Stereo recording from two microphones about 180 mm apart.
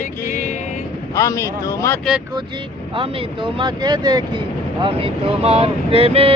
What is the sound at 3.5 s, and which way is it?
Speech, 25° right (ahead or behind).